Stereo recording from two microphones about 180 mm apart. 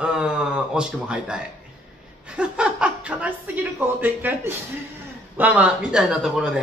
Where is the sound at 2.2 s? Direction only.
5° right (ahead or behind).